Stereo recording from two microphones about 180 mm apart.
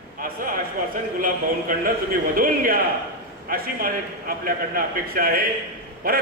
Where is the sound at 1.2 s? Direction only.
50° right (ahead or behind).